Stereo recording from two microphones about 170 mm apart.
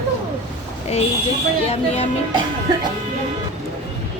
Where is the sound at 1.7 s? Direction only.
35° left (ahead or behind).